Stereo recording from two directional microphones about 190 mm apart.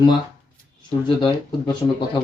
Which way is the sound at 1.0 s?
25° left (ahead or behind).